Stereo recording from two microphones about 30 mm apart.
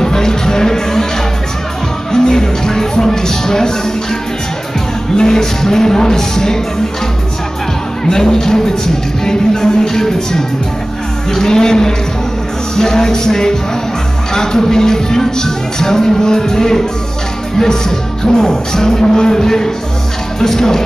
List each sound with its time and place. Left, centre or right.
0.0 s music: centre
2.1 s music: left
8.0 s music: centre
11.3 s speech: centre
12.7 s music: centre